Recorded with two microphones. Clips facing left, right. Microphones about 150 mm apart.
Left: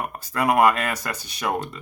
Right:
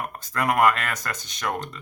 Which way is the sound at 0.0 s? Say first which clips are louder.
Left 3 dB; 10° left (ahead or behind).